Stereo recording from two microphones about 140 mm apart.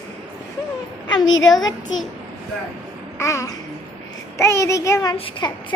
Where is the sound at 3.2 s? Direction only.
20° left (ahead or behind).